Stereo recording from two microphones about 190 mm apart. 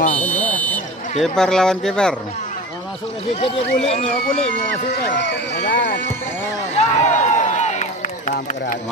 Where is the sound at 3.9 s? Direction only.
35° left (ahead or behind).